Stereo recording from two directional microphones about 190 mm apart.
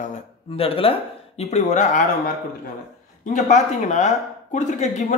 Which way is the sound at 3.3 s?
40° left (ahead or behind).